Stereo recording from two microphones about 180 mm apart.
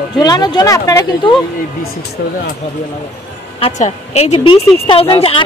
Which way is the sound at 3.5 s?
35° left (ahead or behind).